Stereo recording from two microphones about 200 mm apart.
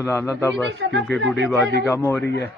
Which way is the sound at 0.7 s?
60° right (ahead or behind).